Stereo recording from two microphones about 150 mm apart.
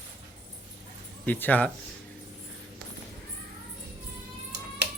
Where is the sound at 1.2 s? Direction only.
10° left (ahead or behind).